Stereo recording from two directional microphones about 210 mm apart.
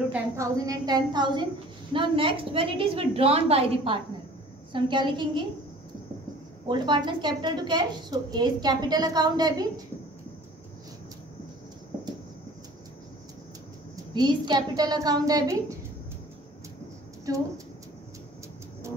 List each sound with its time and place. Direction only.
0.1 s a woman's voice: 15° right (ahead or behind)
6.7 s a woman's voice: 20° right (ahead or behind)
14.1 s a woman's voice: 20° right (ahead or behind)